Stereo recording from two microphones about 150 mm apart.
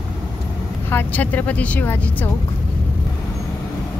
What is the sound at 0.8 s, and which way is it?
Speech, 15° left (ahead or behind).